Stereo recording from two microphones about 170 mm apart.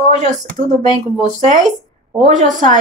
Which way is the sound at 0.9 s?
45° right (ahead or behind).